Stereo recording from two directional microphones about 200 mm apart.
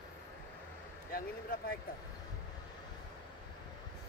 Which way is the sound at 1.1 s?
45° left (ahead or behind).